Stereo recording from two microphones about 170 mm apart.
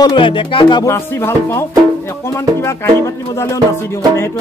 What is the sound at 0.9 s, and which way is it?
Speech, 15° left (ahead or behind).